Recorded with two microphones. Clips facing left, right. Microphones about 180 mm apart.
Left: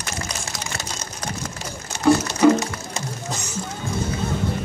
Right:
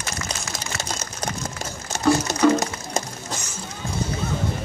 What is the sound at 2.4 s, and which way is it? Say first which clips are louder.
Music: left 3 dB; 10° left (ahead or behind).